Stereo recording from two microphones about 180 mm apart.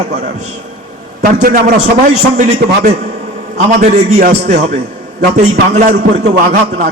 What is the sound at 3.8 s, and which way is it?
A man's voice, 40° right (ahead or behind).